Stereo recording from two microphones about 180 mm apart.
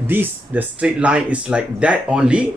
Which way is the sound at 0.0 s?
10° right (ahead or behind).